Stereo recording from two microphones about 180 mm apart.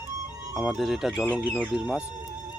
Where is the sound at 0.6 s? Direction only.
5° right (ahead or behind).